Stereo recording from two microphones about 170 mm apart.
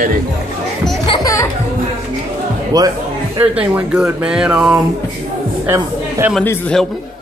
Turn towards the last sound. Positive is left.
turn(degrees=10)  # may be behind; listen again after turning